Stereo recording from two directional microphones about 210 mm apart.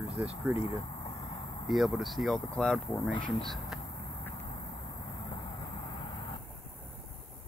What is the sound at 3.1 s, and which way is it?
Speech, 20° left (ahead or behind).